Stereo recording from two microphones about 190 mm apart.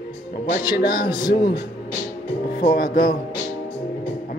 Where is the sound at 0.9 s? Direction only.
20° left (ahead or behind).